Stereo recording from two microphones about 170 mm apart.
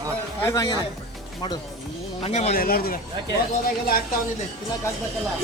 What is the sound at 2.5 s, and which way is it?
Speech, 60° left (ahead or behind).